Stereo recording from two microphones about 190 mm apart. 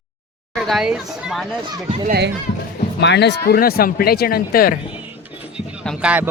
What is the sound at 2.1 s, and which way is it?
Speech, 60° right (ahead or behind).